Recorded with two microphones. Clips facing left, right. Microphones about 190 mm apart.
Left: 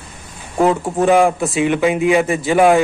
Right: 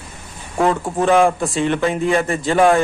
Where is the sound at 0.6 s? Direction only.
5° left (ahead or behind).